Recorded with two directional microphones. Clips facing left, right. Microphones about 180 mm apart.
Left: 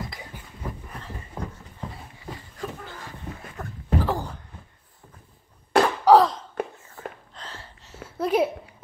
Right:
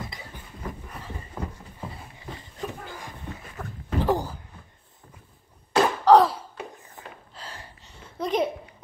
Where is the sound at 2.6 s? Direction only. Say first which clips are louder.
Even; 20° right (ahead or behind).